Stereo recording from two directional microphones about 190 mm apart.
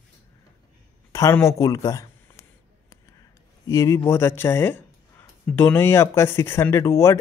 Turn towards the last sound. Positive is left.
turn(degrees=15)  # may be behind; listen again after turning